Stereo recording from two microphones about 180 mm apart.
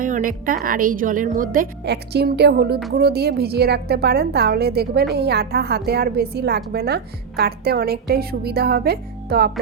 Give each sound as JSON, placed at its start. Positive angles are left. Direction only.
{"t": 0.0, "sound": "a woman's voice", "side_deg": -50}